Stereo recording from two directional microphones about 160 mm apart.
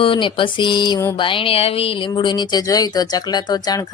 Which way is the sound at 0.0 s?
30° left (ahead or behind).